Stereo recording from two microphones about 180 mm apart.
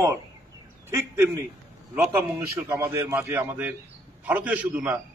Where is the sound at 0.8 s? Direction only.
15° right (ahead or behind).